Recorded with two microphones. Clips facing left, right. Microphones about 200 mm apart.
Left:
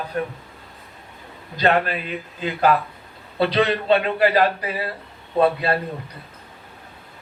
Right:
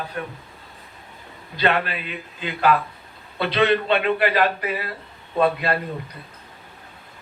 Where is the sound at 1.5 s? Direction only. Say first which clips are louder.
Left 3 dB; 40° left (ahead or behind).